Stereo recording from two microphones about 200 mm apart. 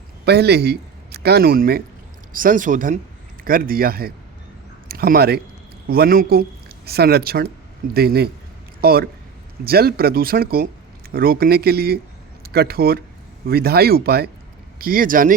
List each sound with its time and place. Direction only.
0.3 s a man's voice: 55° right (ahead or behind)